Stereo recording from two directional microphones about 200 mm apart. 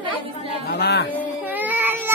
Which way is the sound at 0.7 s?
55° left (ahead or behind).